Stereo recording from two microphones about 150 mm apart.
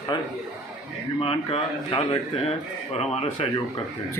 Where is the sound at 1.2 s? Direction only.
40° left (ahead or behind).